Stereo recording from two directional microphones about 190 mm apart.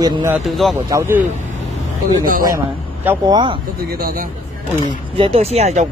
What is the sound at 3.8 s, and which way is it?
Speech, 50° right (ahead or behind).